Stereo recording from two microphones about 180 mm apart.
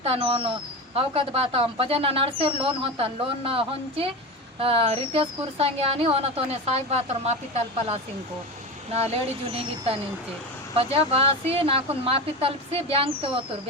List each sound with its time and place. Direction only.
0.0 s speech: 30° right (ahead or behind)
8.9 s speech: 35° right (ahead or behind)